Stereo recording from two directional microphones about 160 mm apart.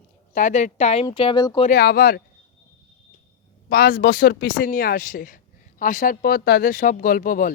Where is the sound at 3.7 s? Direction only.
70° left (ahead or behind).